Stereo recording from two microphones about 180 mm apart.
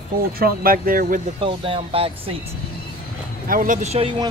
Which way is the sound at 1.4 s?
30° right (ahead or behind).